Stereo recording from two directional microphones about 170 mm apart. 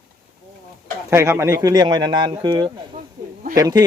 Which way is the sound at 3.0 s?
55° right (ahead or behind).